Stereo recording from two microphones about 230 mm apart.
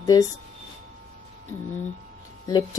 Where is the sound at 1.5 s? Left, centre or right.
Centre.